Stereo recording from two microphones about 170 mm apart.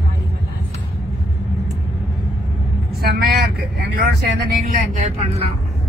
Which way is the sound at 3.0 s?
65° right (ahead or behind).